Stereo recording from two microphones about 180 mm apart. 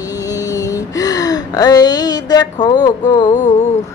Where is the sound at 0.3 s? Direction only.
20° left (ahead or behind).